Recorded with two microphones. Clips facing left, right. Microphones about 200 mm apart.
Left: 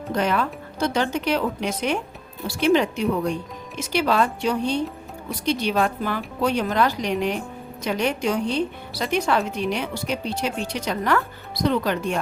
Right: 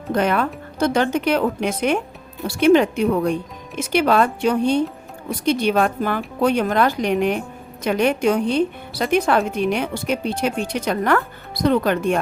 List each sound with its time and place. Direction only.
0.1 s a woman's voice: 55° right (ahead or behind)